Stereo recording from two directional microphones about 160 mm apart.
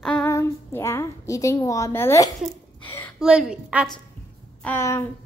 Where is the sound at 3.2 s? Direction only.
5° right (ahead or behind).